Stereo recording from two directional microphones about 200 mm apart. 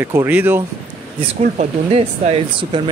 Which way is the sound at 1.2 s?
30° right (ahead or behind).